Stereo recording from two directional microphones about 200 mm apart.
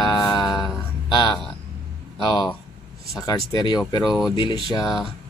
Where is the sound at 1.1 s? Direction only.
25° left (ahead or behind).